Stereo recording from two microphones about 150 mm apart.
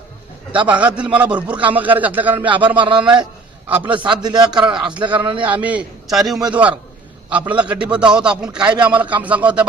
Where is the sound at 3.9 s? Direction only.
30° right (ahead or behind).